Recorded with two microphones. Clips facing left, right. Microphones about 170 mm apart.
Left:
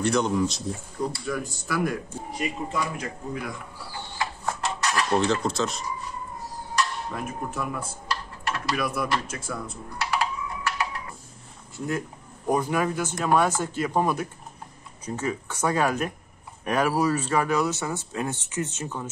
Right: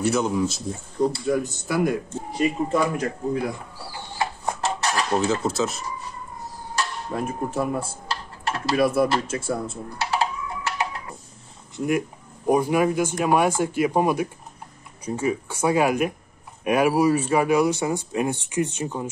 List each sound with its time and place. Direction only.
0.0 s speech: 5° right (ahead or behind)
1.2 s speech: 25° right (ahead or behind)
2.7 s speech: 50° right (ahead or behind)
4.2 s a sound: 25° right (ahead or behind)
5.2 s speech: 5° right (ahead or behind)
6.7 s a sound: 30° right (ahead or behind)
11.7 s speech: 15° right (ahead or behind)